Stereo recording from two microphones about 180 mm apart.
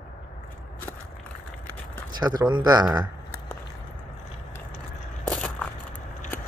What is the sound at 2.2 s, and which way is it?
Speech, 20° right (ahead or behind).